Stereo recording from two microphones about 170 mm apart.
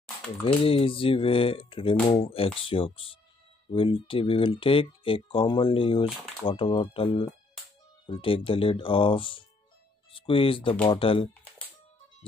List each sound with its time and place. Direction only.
0.4 s speech: 35° left (ahead or behind)